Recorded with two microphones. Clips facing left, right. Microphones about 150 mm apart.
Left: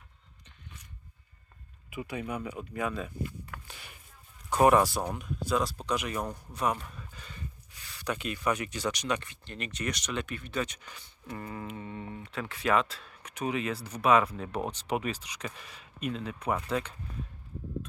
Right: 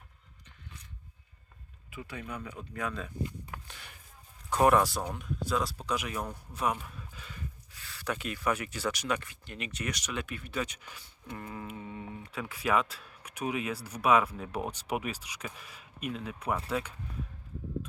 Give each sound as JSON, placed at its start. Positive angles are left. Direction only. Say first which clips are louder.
{"t": 1.9, "sound": "speech", "louder": "left 5 dB", "side_deg": 15}
{"t": 3.2, "sound": "speech", "louder": "even", "side_deg": -15}
{"t": 3.7, "sound": "a sound", "louder": "left 1 dB", "side_deg": 5}
{"t": 4.7, "sound": "speech", "louder": "left 2 dB", "side_deg": 0}